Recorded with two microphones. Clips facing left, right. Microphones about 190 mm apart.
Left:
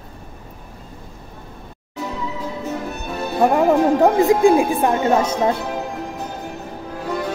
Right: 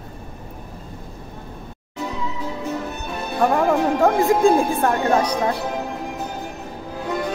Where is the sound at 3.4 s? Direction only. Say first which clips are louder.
Left 3 dB; 20° left (ahead or behind).